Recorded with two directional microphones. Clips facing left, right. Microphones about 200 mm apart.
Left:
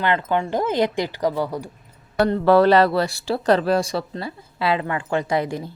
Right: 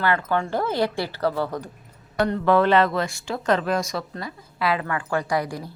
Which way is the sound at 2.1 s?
35° left (ahead or behind).